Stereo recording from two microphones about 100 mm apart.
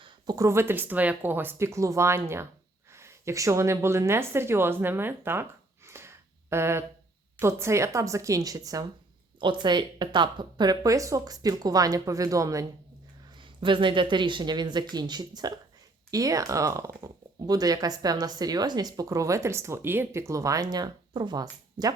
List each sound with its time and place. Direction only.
0.3 s speech: 25° right (ahead or behind)
9.4 s speech: 50° right (ahead or behind); by 12.6 s 35° right (ahead or behind)
13.4 s speech: 55° right (ahead or behind)